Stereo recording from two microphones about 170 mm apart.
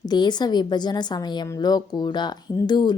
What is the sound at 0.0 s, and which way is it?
A woman's voice, 25° left (ahead or behind).